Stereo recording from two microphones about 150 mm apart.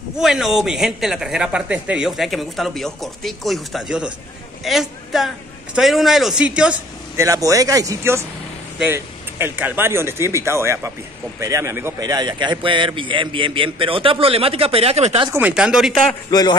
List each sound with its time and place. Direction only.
0.1 s speech: 5° right (ahead or behind)
7.2 s speech: 20° right (ahead or behind)
12.0 s a man's voice: 30° right (ahead or behind); by 15.2 s 45° right (ahead or behind)
15.3 s speech: 10° right (ahead or behind)
16.3 s a man's voice: 25° left (ahead or behind)